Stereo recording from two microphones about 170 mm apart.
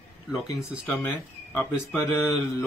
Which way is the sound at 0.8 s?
10° left (ahead or behind).